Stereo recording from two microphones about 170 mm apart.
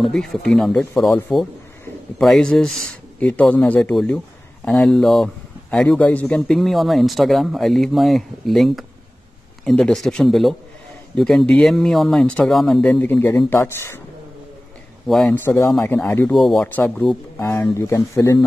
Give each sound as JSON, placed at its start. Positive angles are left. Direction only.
{"t": 0.0, "sound": "speech", "side_deg": 0}
{"t": 15.0, "sound": "speech", "side_deg": 0}
{"t": 15.3, "sound": "speech", "side_deg": 15}
{"t": 17.4, "sound": "speech", "side_deg": 15}